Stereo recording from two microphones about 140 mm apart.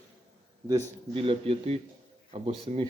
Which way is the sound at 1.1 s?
40° right (ahead or behind).